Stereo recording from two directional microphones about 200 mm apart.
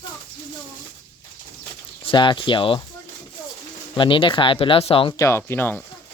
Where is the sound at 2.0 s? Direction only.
25° left (ahead or behind).